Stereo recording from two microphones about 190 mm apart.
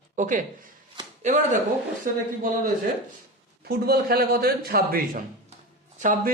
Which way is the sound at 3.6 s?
55° right (ahead or behind).